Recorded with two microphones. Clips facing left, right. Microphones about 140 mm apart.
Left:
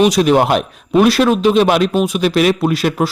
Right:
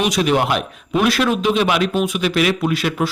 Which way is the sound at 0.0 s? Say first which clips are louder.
Left 6 dB; 40° left (ahead or behind).